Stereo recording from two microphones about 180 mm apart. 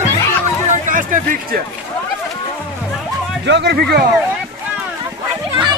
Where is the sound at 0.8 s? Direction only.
45° right (ahead or behind).